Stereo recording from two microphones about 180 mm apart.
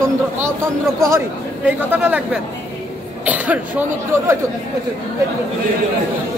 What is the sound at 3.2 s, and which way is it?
Speech, 10° right (ahead or behind).